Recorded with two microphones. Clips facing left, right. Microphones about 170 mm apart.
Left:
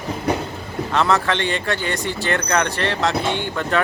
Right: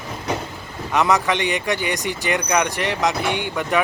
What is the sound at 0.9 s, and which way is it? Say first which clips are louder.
Speech: right 1 dB; 15° right (ahead or behind).